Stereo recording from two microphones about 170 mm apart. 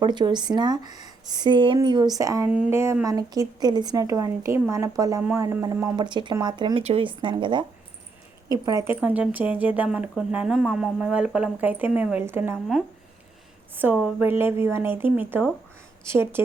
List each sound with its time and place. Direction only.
0.0 s speech: 25° right (ahead or behind)
8.9 s speech: 10° right (ahead or behind)
13.7 s speech: 10° right (ahead or behind)